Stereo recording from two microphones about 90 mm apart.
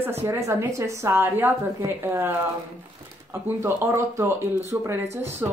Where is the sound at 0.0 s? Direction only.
30° right (ahead or behind).